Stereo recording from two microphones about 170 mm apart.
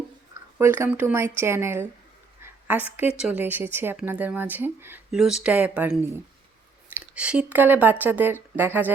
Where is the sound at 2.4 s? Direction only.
10° right (ahead or behind).